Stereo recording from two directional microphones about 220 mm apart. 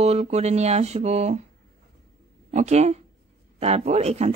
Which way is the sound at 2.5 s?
30° right (ahead or behind).